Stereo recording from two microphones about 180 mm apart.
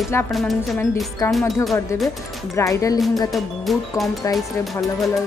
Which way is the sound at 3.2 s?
Centre (ahead or behind).